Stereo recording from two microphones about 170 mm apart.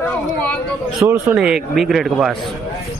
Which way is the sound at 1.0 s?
15° right (ahead or behind).